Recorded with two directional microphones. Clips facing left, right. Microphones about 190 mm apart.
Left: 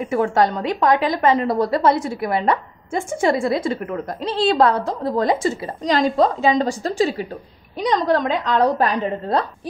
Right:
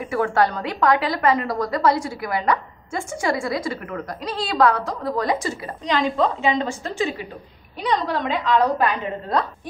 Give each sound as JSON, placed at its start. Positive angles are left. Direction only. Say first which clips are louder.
{"t": 0.0, "sound": "a woman's voice", "louder": "left 2 dB", "side_deg": 20}
{"t": 5.9, "sound": "a woman's voice", "louder": "left 4 dB", "side_deg": 40}